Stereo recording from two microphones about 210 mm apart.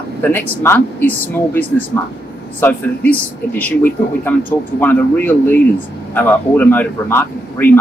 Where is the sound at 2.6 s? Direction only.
10° left (ahead or behind).